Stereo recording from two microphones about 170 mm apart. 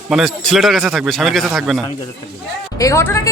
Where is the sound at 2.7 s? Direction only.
20° left (ahead or behind).